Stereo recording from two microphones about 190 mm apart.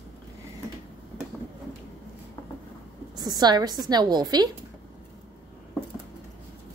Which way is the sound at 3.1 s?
20° right (ahead or behind).